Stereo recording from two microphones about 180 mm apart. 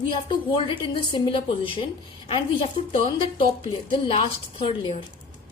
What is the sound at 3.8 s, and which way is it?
A woman's voice, 30° left (ahead or behind).